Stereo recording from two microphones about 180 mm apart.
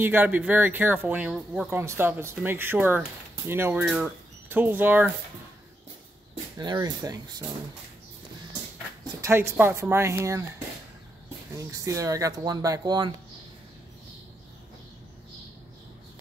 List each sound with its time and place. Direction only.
0.0 s speech: 10° right (ahead or behind)
6.6 s speech: 20° right (ahead or behind)
9.0 s speech: 15° right (ahead or behind)
11.5 s speech: 20° right (ahead or behind)